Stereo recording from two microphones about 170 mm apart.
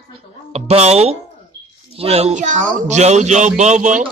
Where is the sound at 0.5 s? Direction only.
40° right (ahead or behind).